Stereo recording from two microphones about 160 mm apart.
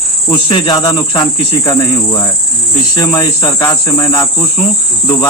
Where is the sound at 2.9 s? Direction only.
25° left (ahead or behind).